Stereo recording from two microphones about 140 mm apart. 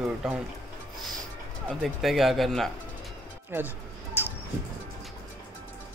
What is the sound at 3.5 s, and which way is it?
Music, 15° right (ahead or behind).